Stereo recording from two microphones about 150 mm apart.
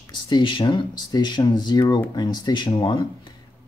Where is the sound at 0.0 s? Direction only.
30° left (ahead or behind).